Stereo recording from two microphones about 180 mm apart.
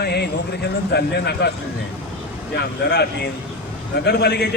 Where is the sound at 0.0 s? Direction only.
65° left (ahead or behind).